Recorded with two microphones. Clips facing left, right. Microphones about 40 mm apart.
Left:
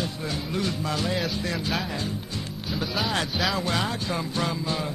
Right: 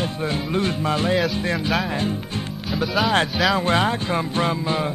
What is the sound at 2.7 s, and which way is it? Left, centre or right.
Speech, centre.